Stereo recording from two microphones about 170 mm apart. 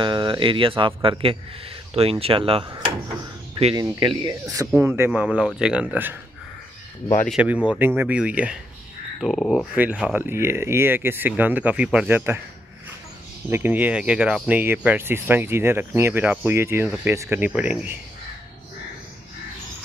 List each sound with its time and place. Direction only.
0.0 s speech: 25° right (ahead or behind)
3.7 s speech: 20° right (ahead or behind)
7.2 s speech: 5° right (ahead or behind)
13.5 s speech: 10° right (ahead or behind)